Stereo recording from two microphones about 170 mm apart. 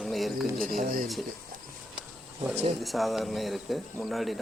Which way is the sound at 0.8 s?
55° right (ahead or behind).